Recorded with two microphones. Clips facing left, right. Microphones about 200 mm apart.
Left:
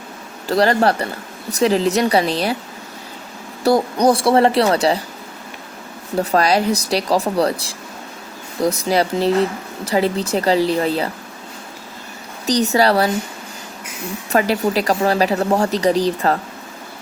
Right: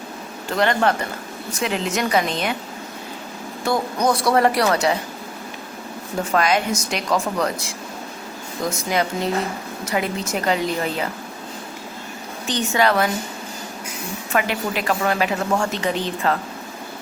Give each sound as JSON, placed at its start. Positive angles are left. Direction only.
{"t": 0.4, "sound": "speech", "side_deg": 35}
{"t": 3.6, "sound": "speech", "side_deg": 35}
{"t": 6.3, "sound": "speech", "side_deg": 35}
{"t": 12.5, "sound": "speech", "side_deg": 40}
{"t": 14.3, "sound": "speech", "side_deg": 35}